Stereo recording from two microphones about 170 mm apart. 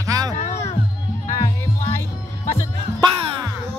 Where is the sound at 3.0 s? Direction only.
25° right (ahead or behind).